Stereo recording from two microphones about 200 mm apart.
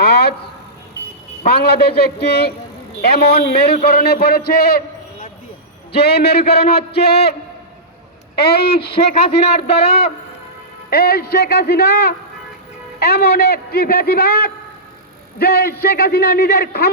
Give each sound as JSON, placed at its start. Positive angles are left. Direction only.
{"t": 0.0, "sound": "a sound", "side_deg": 55}
{"t": 1.5, "sound": "a man's voice", "side_deg": 50}
{"t": 5.9, "sound": "a man's voice", "side_deg": 55}
{"t": 8.4, "sound": "a man's voice", "side_deg": 55}
{"t": 9.4, "sound": "a man's voice", "side_deg": 30}
{"t": 10.8, "sound": "a man's voice", "side_deg": 50}